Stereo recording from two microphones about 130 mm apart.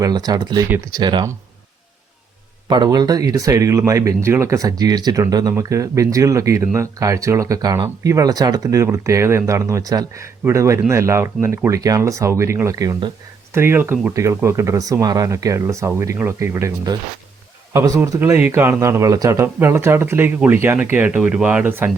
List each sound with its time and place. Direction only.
0.0 s speech: 30° right (ahead or behind)
2.6 s speech: 35° right (ahead or behind); by 21.8 s 15° right (ahead or behind)